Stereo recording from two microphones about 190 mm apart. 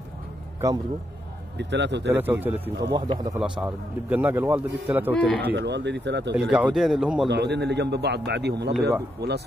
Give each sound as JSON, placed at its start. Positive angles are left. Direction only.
{"t": 0.6, "sound": "a man's voice", "side_deg": -15}
{"t": 1.6, "sound": "speech", "side_deg": -65}
{"t": 2.1, "sound": "a man's voice", "side_deg": -10}
{"t": 2.9, "sound": "speech", "side_deg": -20}
{"t": 3.3, "sound": "a man's voice", "side_deg": -5}
{"t": 5.1, "sound": "speech", "side_deg": 5}
{"t": 5.4, "sound": "a man's voice", "side_deg": -65}
{"t": 6.5, "sound": "speech", "side_deg": -5}
{"t": 7.2, "sound": "a man's voice", "side_deg": -65}